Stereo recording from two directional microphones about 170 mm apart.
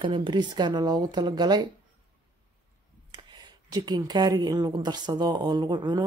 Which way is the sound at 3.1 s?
25° right (ahead or behind).